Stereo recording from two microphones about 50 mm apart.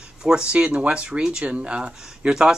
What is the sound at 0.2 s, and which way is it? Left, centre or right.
Speech, centre.